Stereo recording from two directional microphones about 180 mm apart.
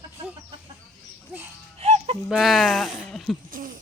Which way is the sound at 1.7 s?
35° right (ahead or behind).